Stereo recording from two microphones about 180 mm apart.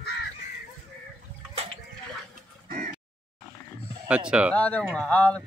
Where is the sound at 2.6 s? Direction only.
45° right (ahead or behind).